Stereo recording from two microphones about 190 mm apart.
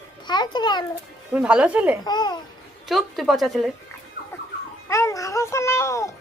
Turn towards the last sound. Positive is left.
turn(degrees=15)  # may be behind; listen again after turning